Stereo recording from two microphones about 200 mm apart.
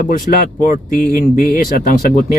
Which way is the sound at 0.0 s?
45° left (ahead or behind).